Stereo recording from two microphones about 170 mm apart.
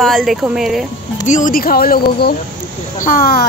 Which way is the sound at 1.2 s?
50° left (ahead or behind).